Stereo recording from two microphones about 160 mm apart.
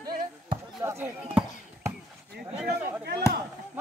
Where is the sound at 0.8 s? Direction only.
15° right (ahead or behind).